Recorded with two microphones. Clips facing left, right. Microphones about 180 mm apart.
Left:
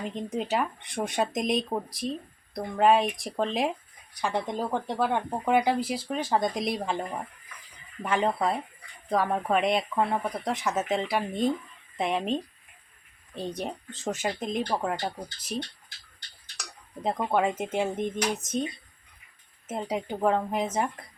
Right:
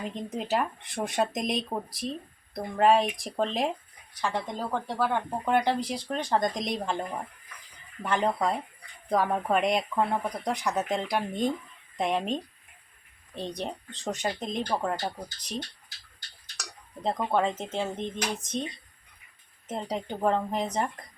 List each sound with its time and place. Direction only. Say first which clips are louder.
0.0 s speech: left 2 dB; centre (ahead or behind)
4.1 s speech: left 2 dB; 15° left (ahead or behind)
5.5 s speech: left 2 dB; 5° left (ahead or behind)
17.0 s speech: left 1 dB; 5° left (ahead or behind)
19.6 s speech: left 2 dB; 5° left (ahead or behind)